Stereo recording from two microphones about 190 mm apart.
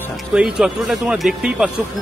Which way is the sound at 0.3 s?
5° right (ahead or behind).